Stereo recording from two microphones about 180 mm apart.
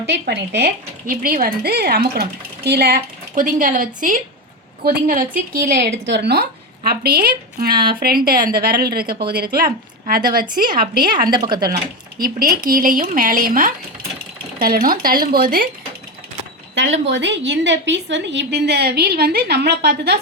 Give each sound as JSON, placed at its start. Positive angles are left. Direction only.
{"t": 0.0, "sound": "speech", "side_deg": -70}
{"t": 5.7, "sound": "a woman's voice", "side_deg": -65}
{"t": 11.3, "sound": "speech", "side_deg": -25}
{"t": 12.2, "sound": "speech", "side_deg": -55}
{"t": 16.7, "sound": "a woman's voice", "side_deg": -85}